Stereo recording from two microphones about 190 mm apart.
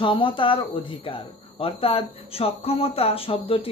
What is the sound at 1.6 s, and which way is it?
Speech, 30° left (ahead or behind).